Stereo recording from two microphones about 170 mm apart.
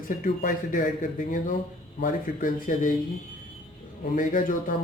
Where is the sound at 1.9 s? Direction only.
55° left (ahead or behind).